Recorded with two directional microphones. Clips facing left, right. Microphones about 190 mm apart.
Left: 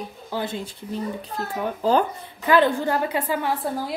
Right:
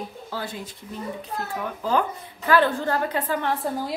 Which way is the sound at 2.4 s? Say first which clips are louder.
Left 2 dB; 15° left (ahead or behind).